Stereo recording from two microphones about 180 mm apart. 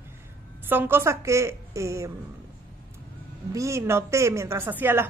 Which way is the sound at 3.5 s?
15° right (ahead or behind).